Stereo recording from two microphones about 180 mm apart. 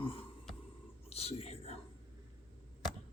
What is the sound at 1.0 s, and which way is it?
Whispering, 35° left (ahead or behind).